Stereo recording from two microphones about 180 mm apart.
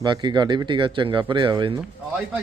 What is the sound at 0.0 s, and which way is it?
Speech, 25° right (ahead or behind).